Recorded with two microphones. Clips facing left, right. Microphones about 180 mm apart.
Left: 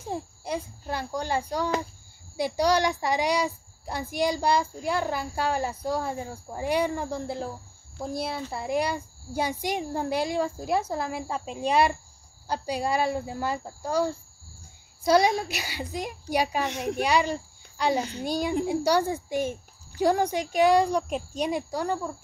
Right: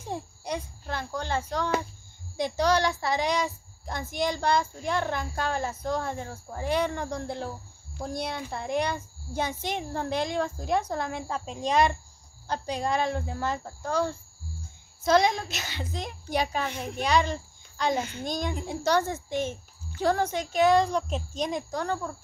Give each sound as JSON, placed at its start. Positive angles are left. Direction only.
{"t": 0.1, "sound": "a sound", "side_deg": 5}
{"t": 2.3, "sound": "a woman's voice", "side_deg": 10}
{"t": 15.0, "sound": "a woman's voice", "side_deg": 10}
{"t": 17.9, "sound": "a child's voice", "side_deg": 35}
{"t": 18.2, "sound": "a woman's voice", "side_deg": 10}